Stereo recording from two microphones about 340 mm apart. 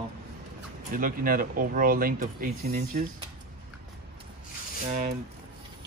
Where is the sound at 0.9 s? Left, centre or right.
Right.